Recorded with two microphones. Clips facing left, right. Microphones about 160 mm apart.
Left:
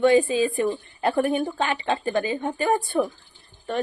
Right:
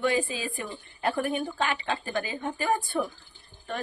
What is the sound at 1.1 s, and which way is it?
Speech, 45° left (ahead or behind).